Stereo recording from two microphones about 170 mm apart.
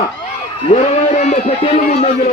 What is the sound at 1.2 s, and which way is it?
Speech, 45° left (ahead or behind).